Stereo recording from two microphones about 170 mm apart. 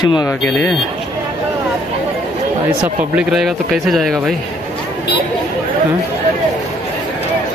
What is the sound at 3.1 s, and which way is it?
Speech, centre (ahead or behind).